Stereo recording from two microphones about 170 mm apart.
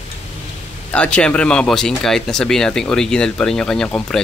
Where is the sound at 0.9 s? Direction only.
5° left (ahead or behind).